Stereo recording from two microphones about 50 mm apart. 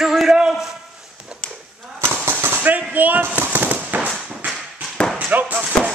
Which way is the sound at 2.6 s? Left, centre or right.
Right.